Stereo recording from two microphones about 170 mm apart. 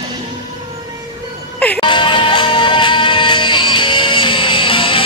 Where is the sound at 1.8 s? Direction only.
30° left (ahead or behind).